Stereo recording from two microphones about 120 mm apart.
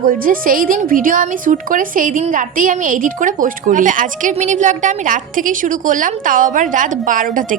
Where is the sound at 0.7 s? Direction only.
90° right.